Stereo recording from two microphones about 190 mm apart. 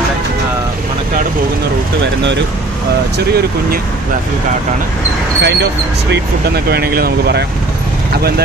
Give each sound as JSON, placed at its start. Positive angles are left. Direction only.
{"t": 5.4, "sound": "speech", "side_deg": -60}